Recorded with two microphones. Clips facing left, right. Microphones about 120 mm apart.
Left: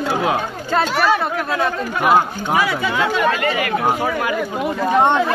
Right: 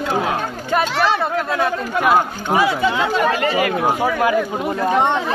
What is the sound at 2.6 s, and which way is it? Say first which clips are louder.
Speech: right 2 dB; 25° right (ahead or behind).